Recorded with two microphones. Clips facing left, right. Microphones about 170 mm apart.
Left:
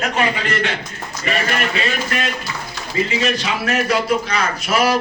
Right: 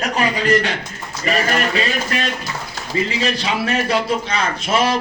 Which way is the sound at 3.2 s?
30° right (ahead or behind).